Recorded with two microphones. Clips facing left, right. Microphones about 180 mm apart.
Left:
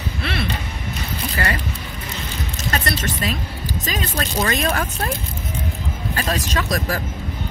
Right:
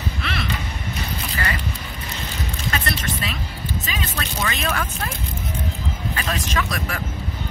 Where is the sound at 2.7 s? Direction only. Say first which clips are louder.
Left 3 dB; 35° left (ahead or behind).